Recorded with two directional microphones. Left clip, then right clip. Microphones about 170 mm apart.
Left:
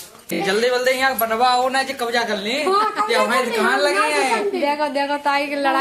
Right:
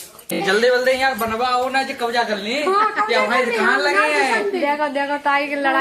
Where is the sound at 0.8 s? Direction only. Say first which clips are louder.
Even; 75° left (ahead or behind); by 2.5 s 55° left (ahead or behind).